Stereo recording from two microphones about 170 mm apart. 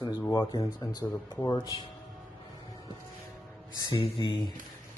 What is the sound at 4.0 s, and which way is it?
Speech, 30° left (ahead or behind).